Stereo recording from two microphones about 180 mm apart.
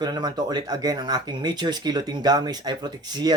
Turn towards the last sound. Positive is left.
turn(degrees=-25)  # may be behind; listen again after turning